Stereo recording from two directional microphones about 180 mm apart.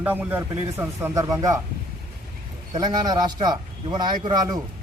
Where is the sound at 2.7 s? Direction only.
25° right (ahead or behind).